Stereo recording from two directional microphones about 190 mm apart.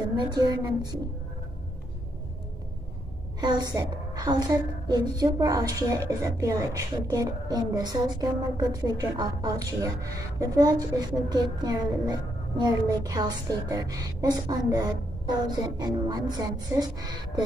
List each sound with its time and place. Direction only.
0.2 s a woman's voice: 20° right (ahead or behind)
3.3 s a woman's voice: 20° right (ahead or behind)